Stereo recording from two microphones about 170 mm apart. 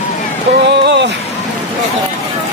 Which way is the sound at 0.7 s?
90° right.